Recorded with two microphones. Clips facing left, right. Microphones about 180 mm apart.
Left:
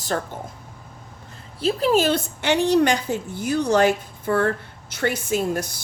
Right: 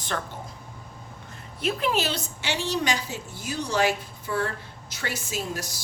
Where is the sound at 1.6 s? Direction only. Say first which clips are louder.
Left 5 dB; 30° left (ahead or behind).